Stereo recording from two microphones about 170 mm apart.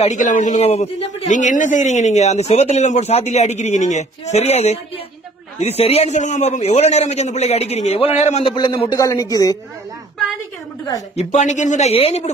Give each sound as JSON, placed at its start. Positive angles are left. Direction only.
{"t": 0.0, "sound": "a man's voice", "side_deg": 45}
{"t": 11.1, "sound": "speech", "side_deg": 45}